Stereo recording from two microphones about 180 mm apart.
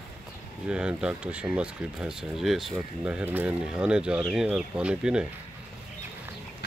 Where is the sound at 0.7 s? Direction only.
5° right (ahead or behind).